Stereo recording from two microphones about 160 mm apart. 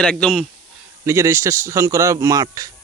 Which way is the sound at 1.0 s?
15° right (ahead or behind).